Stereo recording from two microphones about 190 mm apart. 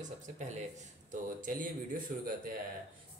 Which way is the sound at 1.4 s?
45° right (ahead or behind).